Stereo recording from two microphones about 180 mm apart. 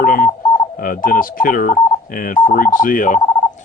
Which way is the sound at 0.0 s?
50° left (ahead or behind).